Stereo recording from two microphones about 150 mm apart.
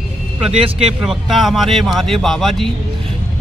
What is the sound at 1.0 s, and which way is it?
Speech, centre (ahead or behind).